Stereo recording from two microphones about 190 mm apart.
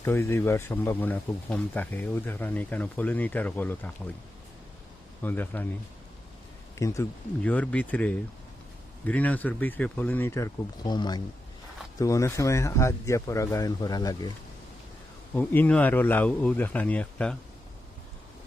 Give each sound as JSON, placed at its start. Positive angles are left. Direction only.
{"t": 0.0, "sound": "speech", "side_deg": 15}
{"t": 5.2, "sound": "speech", "side_deg": 10}
{"t": 6.7, "sound": "speech", "side_deg": 15}
{"t": 15.4, "sound": "speech", "side_deg": 10}